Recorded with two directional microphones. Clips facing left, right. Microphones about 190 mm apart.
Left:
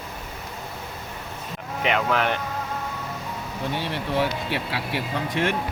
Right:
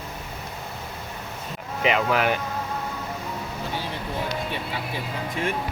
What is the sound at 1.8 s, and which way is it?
Speech, centre (ahead or behind).